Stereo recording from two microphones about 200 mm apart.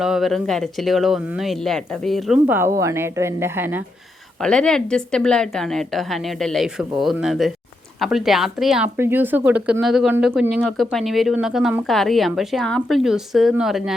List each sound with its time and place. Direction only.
0.0 s speech: centre (ahead or behind)
4.4 s speech: 5° left (ahead or behind)